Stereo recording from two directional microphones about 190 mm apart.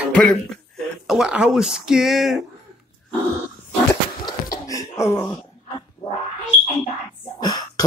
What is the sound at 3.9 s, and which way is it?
Cough, 20° left (ahead or behind).